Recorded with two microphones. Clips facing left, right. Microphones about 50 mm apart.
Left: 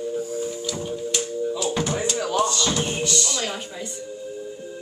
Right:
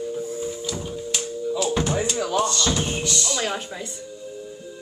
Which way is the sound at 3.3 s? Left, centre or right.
Centre.